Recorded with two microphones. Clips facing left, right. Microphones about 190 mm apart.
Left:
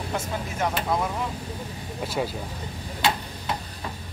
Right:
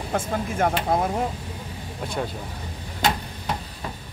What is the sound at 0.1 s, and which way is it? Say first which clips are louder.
Speech: right 6 dB; 50° right (ahead or behind).